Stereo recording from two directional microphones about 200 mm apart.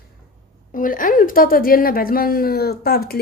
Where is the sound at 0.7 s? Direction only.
45° left (ahead or behind).